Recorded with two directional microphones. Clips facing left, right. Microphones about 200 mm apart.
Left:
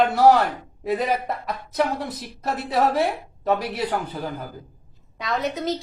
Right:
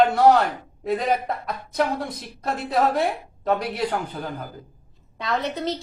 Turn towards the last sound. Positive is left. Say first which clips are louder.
# left 1 dB
turn(degrees=0)  # may be behind; listen again after turning